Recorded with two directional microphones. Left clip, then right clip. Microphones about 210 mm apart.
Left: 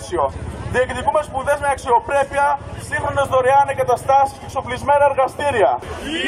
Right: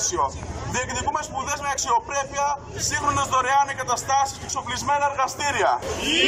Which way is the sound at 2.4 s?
40° left (ahead or behind).